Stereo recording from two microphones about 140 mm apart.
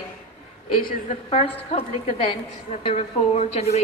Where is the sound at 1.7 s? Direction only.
45° left (ahead or behind).